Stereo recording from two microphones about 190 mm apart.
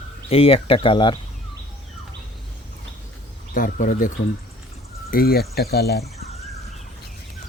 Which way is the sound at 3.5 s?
45° left (ahead or behind).